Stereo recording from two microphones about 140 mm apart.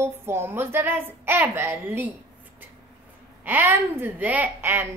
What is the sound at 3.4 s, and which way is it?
A woman's voice, 15° right (ahead or behind).